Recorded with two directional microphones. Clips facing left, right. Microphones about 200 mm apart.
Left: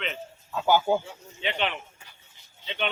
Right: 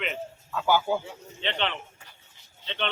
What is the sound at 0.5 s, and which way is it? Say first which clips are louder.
Speech: left 2 dB; 20° left (ahead or behind).